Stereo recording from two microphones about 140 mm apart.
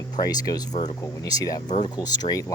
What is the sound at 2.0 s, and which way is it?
Speech, 30° left (ahead or behind).